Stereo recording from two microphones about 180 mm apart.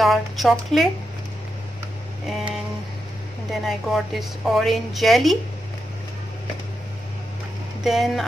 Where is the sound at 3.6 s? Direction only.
Centre (ahead or behind).